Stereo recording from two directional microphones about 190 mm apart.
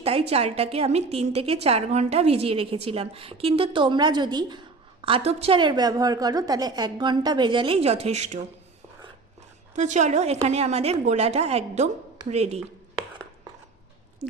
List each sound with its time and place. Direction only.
0.0 s a woman's voice: 30° right (ahead or behind)
9.7 s a woman's voice: 40° right (ahead or behind)
12.3 s a sound: 35° right (ahead or behind)